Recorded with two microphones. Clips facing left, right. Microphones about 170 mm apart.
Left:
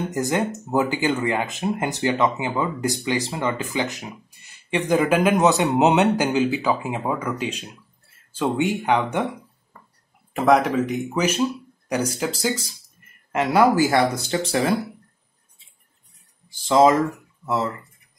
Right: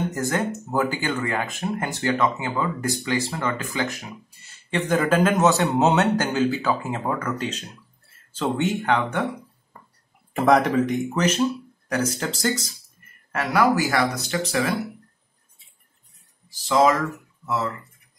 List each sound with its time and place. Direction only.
0.1 s a man's voice: 15° left (ahead or behind)
10.3 s a man's voice: centre (ahead or behind)
13.3 s speech: 20° left (ahead or behind)
16.4 s speech: 25° left (ahead or behind)